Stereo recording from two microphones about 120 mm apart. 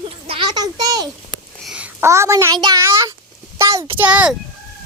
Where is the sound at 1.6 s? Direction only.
10° right (ahead or behind).